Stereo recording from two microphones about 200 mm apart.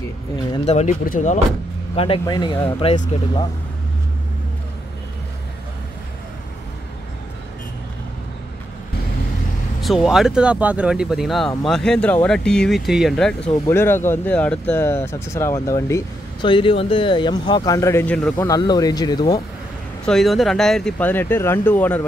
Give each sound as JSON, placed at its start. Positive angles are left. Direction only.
{"t": 0.7, "sound": "speech", "side_deg": 35}
{"t": 2.0, "sound": "speech", "side_deg": 25}
{"t": 9.8, "sound": "speech", "side_deg": 0}
{"t": 18.5, "sound": "speech", "side_deg": 20}
{"t": 20.1, "sound": "speech", "side_deg": 0}